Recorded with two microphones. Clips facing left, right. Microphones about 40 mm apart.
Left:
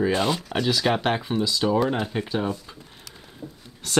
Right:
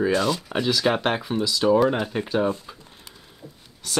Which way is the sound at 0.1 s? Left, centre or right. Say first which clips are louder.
Right 1 dB; left.